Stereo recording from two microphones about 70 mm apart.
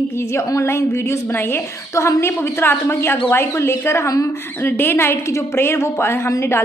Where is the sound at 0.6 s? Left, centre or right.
Left.